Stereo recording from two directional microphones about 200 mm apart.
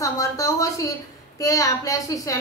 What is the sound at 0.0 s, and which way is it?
A woman's voice, 15° left (ahead or behind).